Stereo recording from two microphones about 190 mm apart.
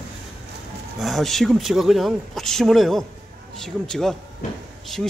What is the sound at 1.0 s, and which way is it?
Speech, centre (ahead or behind).